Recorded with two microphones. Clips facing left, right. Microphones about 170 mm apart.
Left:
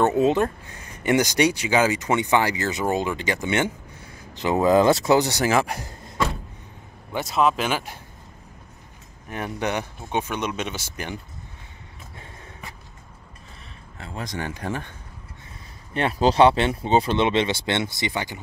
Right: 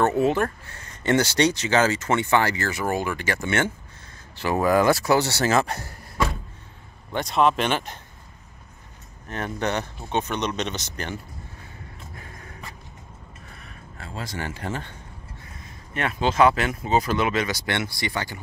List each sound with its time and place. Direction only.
0.0 s speech: 20° left (ahead or behind)
7.1 s speech: 5° left (ahead or behind)
9.3 s speech: 10° left (ahead or behind)
13.9 s speech: 20° left (ahead or behind)
15.9 s speech: 30° left (ahead or behind)